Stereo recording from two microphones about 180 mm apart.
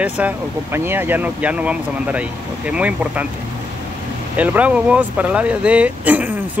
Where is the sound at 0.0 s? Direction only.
10° right (ahead or behind).